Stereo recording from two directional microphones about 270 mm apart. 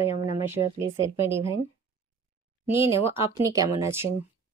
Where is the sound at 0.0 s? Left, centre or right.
Left.